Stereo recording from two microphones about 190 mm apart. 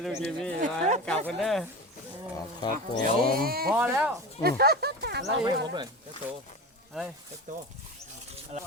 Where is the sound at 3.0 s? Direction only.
50° right (ahead or behind).